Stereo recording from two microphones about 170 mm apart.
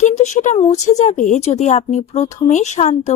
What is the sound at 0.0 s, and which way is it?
A woman's voice, 40° left (ahead or behind).